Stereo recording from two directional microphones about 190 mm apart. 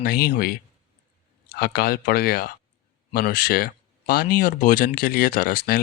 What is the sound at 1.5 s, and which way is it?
Speech, 50° left (ahead or behind).